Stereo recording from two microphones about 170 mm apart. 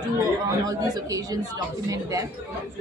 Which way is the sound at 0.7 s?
20° right (ahead or behind).